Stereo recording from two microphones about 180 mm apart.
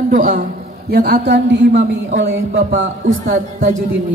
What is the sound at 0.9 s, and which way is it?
Speech, 60° right (ahead or behind).